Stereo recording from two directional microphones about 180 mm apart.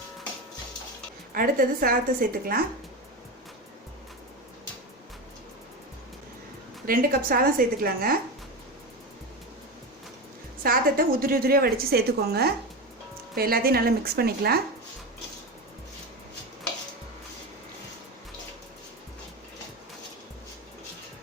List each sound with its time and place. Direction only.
1.3 s a woman's voice: 55° right (ahead or behind)
6.8 s a woman's voice: 55° right (ahead or behind)
10.6 s a woman's voice: 55° right (ahead or behind)